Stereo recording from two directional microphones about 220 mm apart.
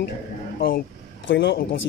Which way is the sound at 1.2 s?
50° left (ahead or behind).